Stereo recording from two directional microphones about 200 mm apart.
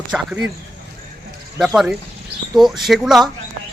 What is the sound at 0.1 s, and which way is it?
Speech, 5° right (ahead or behind).